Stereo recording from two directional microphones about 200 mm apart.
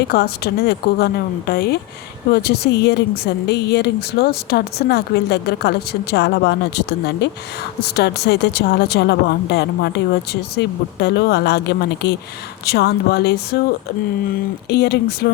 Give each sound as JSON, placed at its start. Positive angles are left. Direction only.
{"t": 0.1, "sound": "a woman's voice", "side_deg": 55}
{"t": 14.7, "sound": "a woman's voice", "side_deg": 55}